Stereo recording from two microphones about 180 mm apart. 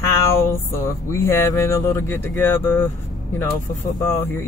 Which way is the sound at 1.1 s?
15° left (ahead or behind).